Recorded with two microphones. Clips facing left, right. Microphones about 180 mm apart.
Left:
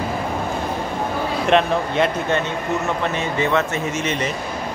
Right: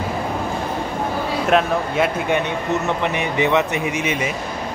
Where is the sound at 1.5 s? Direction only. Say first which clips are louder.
Left 1 dB; 5° right (ahead or behind).